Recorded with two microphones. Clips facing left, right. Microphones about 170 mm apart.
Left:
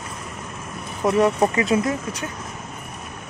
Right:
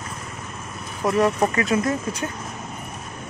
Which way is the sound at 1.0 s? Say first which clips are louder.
Left 2 dB; 10° left (ahead or behind).